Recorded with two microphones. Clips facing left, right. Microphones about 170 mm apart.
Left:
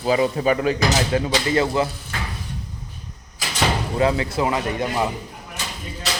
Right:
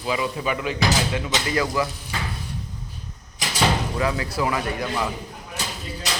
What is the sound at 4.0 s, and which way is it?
Speech, 25° left (ahead or behind).